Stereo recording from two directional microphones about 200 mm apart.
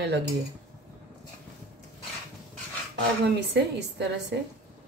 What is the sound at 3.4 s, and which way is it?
Speech, 60° right (ahead or behind).